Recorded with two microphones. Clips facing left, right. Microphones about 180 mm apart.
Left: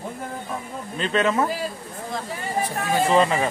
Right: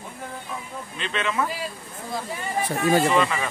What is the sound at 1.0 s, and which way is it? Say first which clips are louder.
Speech: left 6 dB; 40° left (ahead or behind).